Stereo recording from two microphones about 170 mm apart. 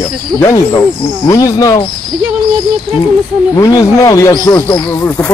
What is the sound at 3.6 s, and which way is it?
Speech, 20° left (ahead or behind).